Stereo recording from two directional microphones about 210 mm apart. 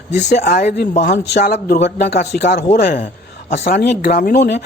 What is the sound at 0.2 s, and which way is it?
Speech, 35° left (ahead or behind).